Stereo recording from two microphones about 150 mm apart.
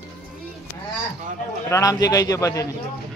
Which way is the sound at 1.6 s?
20° left (ahead or behind).